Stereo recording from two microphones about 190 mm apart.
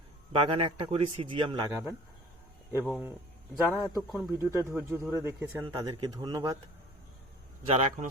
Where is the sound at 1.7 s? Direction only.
10° right (ahead or behind).